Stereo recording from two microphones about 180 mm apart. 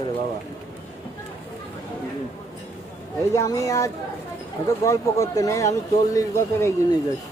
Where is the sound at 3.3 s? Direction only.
20° left (ahead or behind).